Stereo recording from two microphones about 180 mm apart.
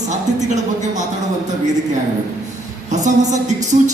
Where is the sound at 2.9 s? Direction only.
40° right (ahead or behind).